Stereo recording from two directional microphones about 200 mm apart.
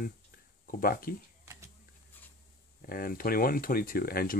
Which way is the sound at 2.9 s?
45° left (ahead or behind).